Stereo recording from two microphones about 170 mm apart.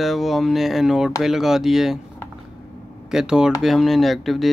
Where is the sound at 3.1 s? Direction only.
5° right (ahead or behind).